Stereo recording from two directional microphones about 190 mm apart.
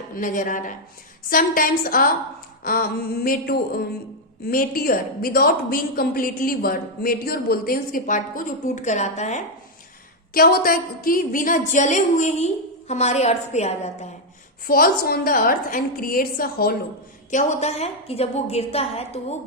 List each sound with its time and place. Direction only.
0.2 s a woman's voice: 45° left (ahead or behind)
10.3 s a woman's voice: 50° left (ahead or behind)
14.7 s a woman's voice: 50° left (ahead or behind)
17.3 s a woman's voice: 40° left (ahead or behind)